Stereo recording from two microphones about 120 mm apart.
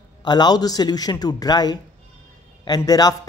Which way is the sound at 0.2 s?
35° left (ahead or behind).